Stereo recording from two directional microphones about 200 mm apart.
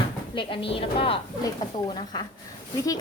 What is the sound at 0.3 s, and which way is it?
A woman's voice, 25° left (ahead or behind).